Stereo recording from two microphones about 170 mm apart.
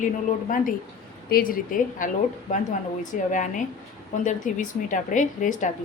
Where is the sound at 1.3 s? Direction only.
60° left (ahead or behind).